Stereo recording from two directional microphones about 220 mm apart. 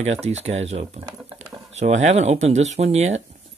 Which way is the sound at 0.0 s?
30° right (ahead or behind).